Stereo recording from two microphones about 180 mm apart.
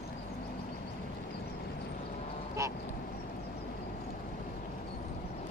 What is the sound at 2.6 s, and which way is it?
Quack, 15° right (ahead or behind).